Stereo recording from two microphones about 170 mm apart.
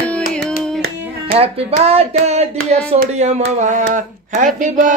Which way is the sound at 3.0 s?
45° right (ahead or behind).